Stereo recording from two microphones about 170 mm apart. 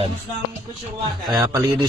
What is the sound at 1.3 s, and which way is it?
Speech, 20° right (ahead or behind).